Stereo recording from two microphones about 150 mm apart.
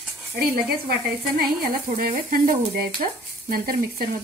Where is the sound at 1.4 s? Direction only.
75° right (ahead or behind).